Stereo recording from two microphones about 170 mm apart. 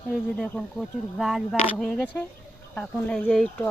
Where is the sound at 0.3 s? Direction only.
Centre (ahead or behind).